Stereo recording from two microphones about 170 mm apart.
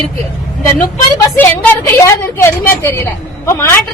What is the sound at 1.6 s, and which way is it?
A woman's voice, 15° left (ahead or behind).